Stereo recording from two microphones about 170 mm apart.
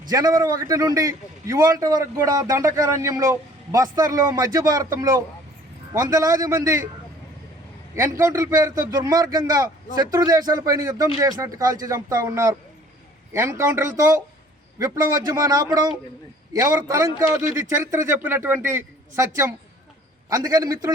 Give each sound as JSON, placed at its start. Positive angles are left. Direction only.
{"t": 0.1, "sound": "a man's voice", "side_deg": -20}
{"t": 7.9, "sound": "a man's voice", "side_deg": -15}